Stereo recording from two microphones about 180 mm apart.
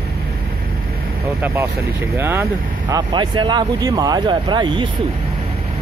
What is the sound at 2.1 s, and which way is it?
Speech, 15° right (ahead or behind).